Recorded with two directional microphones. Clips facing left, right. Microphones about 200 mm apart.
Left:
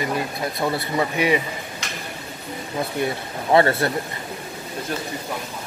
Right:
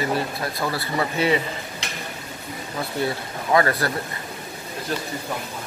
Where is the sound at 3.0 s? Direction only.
25° left (ahead or behind).